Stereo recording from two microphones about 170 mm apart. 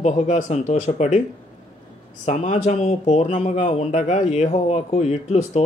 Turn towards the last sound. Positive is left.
turn(degrees=40)  # may be behind; listen again after turning